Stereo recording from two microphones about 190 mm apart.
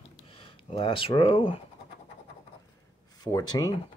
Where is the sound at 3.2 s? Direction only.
20° left (ahead or behind).